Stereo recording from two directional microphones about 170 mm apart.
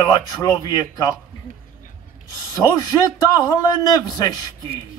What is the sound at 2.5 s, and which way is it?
Speech, 20° left (ahead or behind).